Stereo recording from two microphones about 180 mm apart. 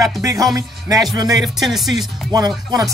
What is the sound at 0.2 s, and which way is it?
Speech, 15° right (ahead or behind).